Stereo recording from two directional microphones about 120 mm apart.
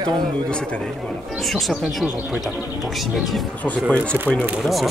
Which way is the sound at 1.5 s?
Centre (ahead or behind).